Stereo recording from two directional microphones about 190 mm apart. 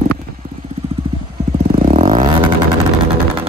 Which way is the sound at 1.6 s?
35° right (ahead or behind).